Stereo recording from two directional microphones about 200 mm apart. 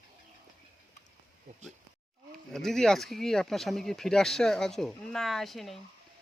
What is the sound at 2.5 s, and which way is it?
Speech, centre (ahead or behind).